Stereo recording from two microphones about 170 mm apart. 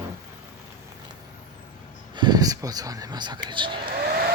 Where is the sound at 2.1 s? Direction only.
25° right (ahead or behind).